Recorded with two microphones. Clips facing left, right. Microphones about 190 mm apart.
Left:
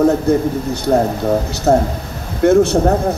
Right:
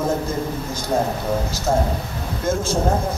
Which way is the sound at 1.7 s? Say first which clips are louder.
Left 7 dB; 70° left (ahead or behind).